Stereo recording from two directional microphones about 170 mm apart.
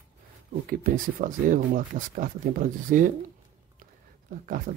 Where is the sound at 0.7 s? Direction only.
55° right (ahead or behind).